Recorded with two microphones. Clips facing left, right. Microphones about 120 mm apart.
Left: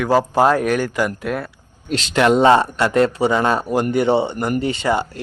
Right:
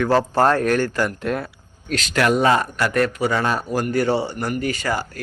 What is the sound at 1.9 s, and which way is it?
Speech, 25° left (ahead or behind).